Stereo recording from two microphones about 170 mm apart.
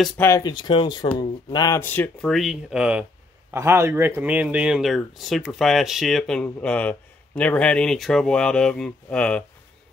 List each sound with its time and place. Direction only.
0.4 s speech: 25° left (ahead or behind); by 2.3 s 10° left (ahead or behind)
2.3 s speech: centre (ahead or behind)